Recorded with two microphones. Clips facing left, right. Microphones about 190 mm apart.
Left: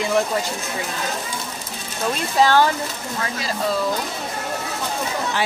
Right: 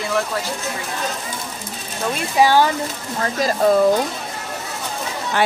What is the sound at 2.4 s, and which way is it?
Speech, 10° right (ahead or behind).